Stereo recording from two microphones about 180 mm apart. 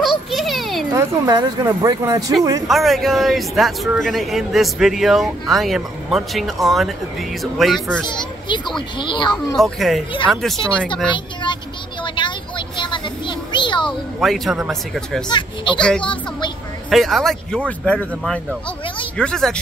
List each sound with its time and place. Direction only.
0.0 s a sound: centre (ahead or behind)
0.9 s speech: 20° right (ahead or behind)
2.7 s a man's voice: centre (ahead or behind)
8.1 s a child's voice: 25° left (ahead or behind)
9.6 s a man's voice: centre (ahead or behind)
12.0 s child singing: 25° left (ahead or behind)
14.2 s a man's voice: centre (ahead or behind)
15.2 s speech: 25° left (ahead or behind)
16.9 s a man's voice: centre (ahead or behind)